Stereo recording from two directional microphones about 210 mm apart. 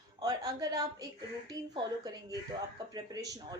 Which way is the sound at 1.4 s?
20° right (ahead or behind).